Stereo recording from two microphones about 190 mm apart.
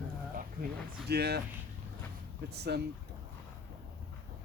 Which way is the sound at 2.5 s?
60° right (ahead or behind).